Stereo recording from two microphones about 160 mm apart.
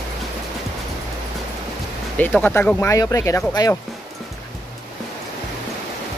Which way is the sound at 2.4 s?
10° left (ahead or behind).